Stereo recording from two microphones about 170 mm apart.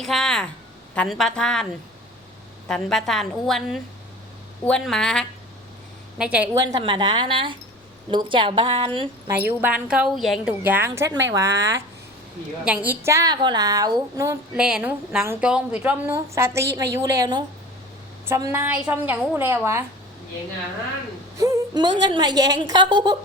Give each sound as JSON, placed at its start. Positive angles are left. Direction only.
{"t": 0.0, "sound": "a woman's voice", "side_deg": 0}
{"t": 2.6, "sound": "a woman's voice", "side_deg": 5}
{"t": 6.1, "sound": "a woman's voice", "side_deg": -5}
{"t": 6.6, "sound": "speech", "side_deg": -25}
{"t": 9.3, "sound": "a woman's voice", "side_deg": -10}
{"t": 13.1, "sound": "speech", "side_deg": -20}
{"t": 14.5, "sound": "a woman's voice", "side_deg": -5}
{"t": 21.3, "sound": "a sound", "side_deg": -20}
{"t": 22.0, "sound": "speech", "side_deg": -25}